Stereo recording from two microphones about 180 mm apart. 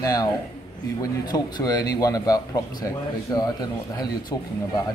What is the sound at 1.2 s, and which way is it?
Speech, 20° left (ahead or behind).